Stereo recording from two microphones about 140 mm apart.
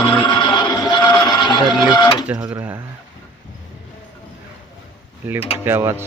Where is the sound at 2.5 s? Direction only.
15° right (ahead or behind).